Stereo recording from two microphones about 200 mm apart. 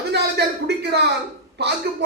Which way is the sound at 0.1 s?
55° right (ahead or behind).